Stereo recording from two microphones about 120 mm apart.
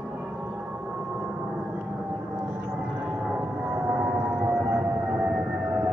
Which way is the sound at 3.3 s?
10° right (ahead or behind).